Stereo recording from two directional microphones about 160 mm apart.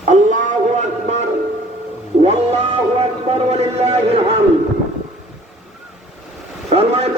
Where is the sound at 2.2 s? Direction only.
45° right (ahead or behind).